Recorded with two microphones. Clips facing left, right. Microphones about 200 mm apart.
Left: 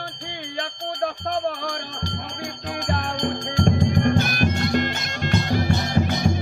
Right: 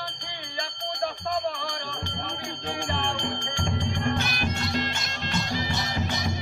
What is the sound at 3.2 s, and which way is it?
Music, 40° left (ahead or behind).